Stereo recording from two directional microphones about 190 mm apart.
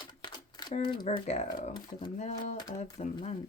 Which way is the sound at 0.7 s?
25° left (ahead or behind).